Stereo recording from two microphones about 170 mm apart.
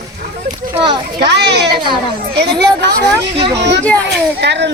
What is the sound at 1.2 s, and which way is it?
Speech, 85° right.